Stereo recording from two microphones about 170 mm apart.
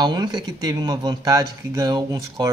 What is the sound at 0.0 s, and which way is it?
Speech, 25° right (ahead or behind).